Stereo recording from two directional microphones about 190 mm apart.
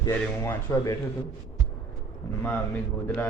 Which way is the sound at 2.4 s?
10° left (ahead or behind).